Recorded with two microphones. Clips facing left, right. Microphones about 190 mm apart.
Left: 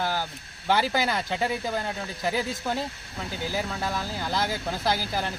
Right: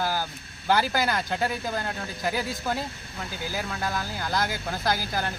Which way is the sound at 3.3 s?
25° left (ahead or behind).